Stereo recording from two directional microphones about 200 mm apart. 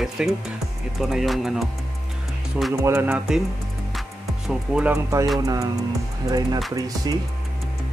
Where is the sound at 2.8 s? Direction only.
10° right (ahead or behind).